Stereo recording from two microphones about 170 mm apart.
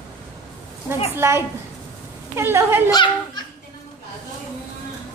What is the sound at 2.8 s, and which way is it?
Speech, 25° left (ahead or behind).